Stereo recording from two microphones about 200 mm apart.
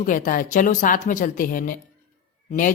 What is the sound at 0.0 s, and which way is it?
A woman's voice, 40° left (ahead or behind).